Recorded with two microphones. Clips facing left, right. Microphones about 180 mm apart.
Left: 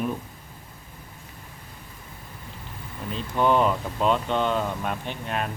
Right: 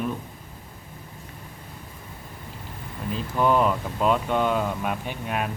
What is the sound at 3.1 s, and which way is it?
Speech, 5° right (ahead or behind).